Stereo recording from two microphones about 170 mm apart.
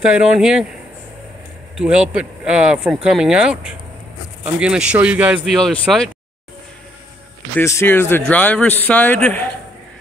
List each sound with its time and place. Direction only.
0.0 s speech: 5° right (ahead or behind)
1.8 s speech: 5° right (ahead or behind)
7.5 s a man's voice: 15° left (ahead or behind)